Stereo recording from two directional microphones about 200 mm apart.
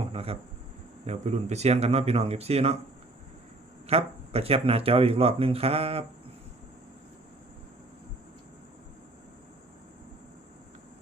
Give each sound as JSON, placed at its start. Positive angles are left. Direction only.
{"t": 0.0, "sound": "a sound", "side_deg": -30}
{"t": 1.0, "sound": "speech", "side_deg": -35}
{"t": 3.8, "sound": "speech", "side_deg": -30}